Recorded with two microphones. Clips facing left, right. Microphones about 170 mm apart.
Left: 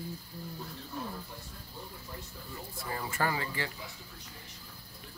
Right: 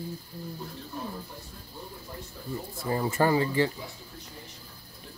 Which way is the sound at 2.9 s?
30° right (ahead or behind).